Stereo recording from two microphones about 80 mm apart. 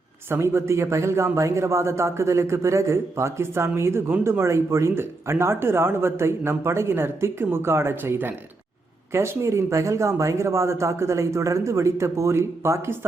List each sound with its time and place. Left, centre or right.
0.3 s a man's voice: right